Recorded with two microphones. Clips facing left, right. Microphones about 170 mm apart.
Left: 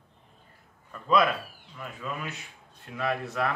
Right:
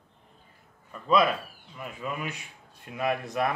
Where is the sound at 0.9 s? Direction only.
5° right (ahead or behind).